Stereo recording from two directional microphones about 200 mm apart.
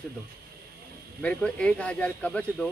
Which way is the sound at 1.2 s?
5° left (ahead or behind).